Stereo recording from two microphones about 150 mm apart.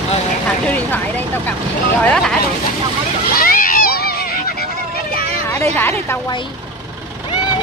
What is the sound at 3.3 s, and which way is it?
Splash, 70° left (ahead or behind).